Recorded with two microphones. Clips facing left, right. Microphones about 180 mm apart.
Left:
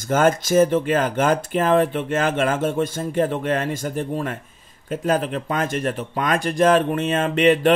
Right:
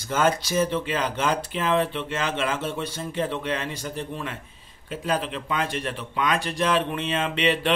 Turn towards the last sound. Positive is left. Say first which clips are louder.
# left 7 dB
turn(degrees=45)  # may be behind; listen again after turning